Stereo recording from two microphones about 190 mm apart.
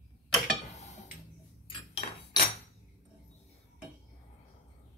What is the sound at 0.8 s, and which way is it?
Tick-tock, 35° left (ahead or behind).